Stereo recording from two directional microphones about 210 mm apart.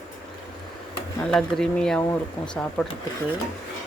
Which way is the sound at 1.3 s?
Centre (ahead or behind).